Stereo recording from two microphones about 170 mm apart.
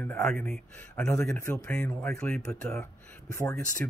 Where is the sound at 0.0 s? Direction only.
5° left (ahead or behind).